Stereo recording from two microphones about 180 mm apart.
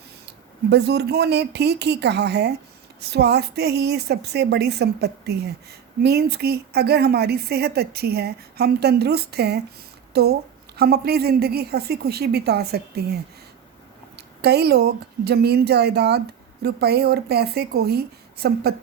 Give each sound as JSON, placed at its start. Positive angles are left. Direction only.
{"t": 0.7, "sound": "a woman's voice", "side_deg": -65}
{"t": 14.2, "sound": "a woman's voice", "side_deg": -65}